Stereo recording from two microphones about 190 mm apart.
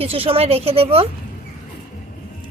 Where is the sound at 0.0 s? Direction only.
30° right (ahead or behind).